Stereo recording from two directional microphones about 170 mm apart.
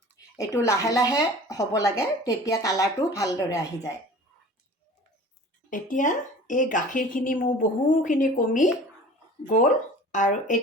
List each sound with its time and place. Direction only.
0.3 s speech: 15° left (ahead or behind)
5.7 s a woman's voice: 50° left (ahead or behind)